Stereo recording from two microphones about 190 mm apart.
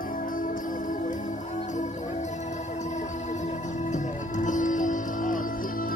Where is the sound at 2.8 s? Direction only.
40° left (ahead or behind).